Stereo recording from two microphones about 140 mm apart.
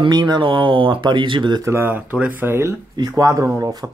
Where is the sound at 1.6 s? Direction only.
15° right (ahead or behind).